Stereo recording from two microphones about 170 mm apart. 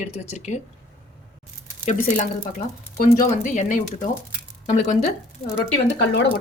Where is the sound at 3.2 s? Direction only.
50° left (ahead or behind).